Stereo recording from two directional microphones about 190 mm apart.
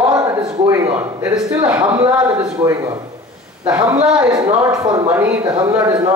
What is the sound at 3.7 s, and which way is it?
Speech, 5° right (ahead or behind).